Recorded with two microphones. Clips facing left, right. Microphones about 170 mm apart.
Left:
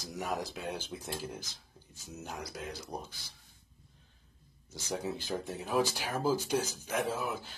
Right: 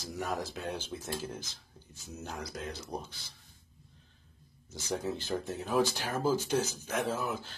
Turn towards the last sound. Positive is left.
turn(degrees=10)  # may be behind; listen again after turning